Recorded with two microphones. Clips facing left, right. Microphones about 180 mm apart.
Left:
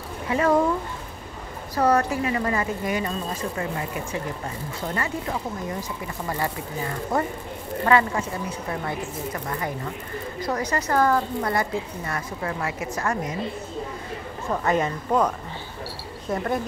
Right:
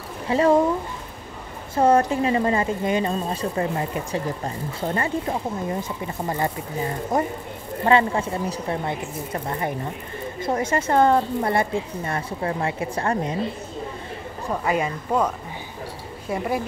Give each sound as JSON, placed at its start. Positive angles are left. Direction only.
{"t": 0.3, "sound": "speech", "side_deg": -25}
{"t": 1.8, "sound": "speech", "side_deg": -25}
{"t": 14.5, "sound": "speech", "side_deg": -10}